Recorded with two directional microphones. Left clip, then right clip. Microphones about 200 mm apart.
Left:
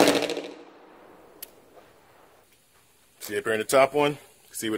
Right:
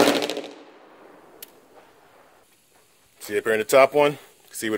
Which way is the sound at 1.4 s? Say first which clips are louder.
Right 1 dB; 10° right (ahead or behind).